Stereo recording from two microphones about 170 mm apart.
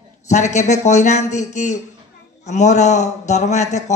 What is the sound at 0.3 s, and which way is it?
A man's voice, 45° left (ahead or behind).